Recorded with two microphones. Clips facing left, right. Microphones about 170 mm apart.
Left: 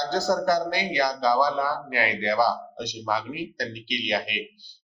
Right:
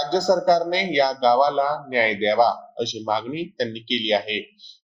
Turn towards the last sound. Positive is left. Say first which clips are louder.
# right 6 dB
turn(degrees=-25)  # may be behind; listen again after turning